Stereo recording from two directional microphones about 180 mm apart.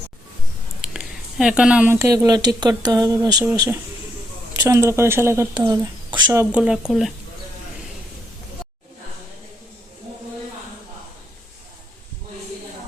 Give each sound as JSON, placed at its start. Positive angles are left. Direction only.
{"t": 0.8, "sound": "speech", "side_deg": -5}
{"t": 6.3, "sound": "speech", "side_deg": -10}